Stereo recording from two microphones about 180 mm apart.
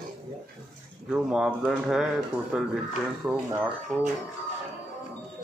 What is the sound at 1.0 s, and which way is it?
Speech, 5° right (ahead or behind).